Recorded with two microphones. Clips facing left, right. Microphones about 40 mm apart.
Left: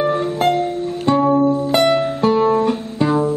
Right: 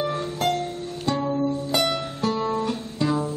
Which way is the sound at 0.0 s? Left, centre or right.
Left.